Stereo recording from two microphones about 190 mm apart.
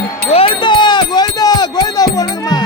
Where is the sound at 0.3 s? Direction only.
30° left (ahead or behind).